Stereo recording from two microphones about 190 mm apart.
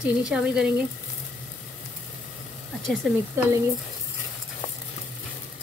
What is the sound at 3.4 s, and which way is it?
Speech, 15° right (ahead or behind).